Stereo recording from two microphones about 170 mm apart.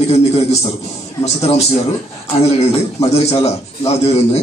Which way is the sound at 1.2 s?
40° left (ahead or behind).